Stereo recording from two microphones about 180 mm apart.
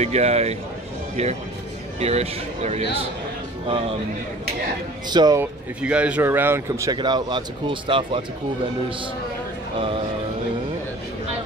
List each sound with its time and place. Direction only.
0.0 s speech: 35° right (ahead or behind)
5.1 s speech: 20° right (ahead or behind)
5.4 s speech: 5° right (ahead or behind); by 8.2 s 30° right (ahead or behind)